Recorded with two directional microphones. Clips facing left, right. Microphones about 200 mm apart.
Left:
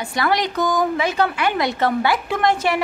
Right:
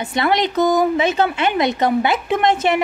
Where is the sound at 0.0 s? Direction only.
20° right (ahead or behind).